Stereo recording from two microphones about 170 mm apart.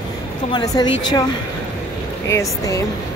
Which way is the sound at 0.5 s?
25° left (ahead or behind).